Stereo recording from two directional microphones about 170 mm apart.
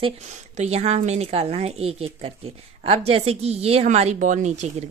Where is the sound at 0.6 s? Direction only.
40° right (ahead or behind).